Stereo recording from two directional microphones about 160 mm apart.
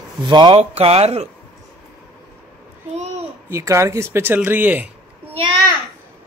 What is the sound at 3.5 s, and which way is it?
Speech, 15° right (ahead or behind).